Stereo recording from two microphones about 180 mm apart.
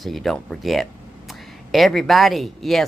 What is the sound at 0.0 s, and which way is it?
Speech, centre (ahead or behind).